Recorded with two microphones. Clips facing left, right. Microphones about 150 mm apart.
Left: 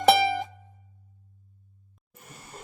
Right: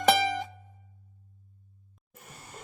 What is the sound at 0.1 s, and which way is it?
Music, 5° left (ahead or behind).